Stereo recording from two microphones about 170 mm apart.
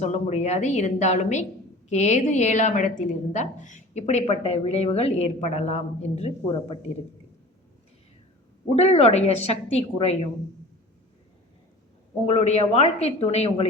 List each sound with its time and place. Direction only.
0.0 s a woman's voice: 40° left (ahead or behind)
8.7 s a woman's voice: 40° left (ahead or behind)
12.3 s a woman's voice: 40° left (ahead or behind)